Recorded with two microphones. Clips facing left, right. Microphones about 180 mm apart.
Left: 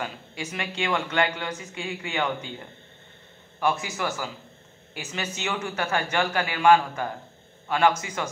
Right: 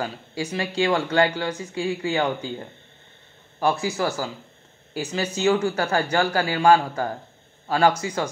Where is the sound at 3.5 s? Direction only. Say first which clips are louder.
Right 4 dB; 30° right (ahead or behind).